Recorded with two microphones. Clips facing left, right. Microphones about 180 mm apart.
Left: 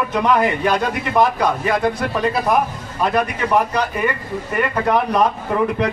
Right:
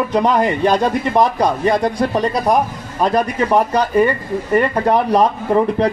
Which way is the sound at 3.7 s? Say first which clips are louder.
Right 6 dB; 30° right (ahead or behind).